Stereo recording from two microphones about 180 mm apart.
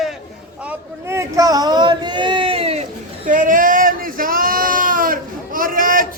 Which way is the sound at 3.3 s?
45° right (ahead or behind).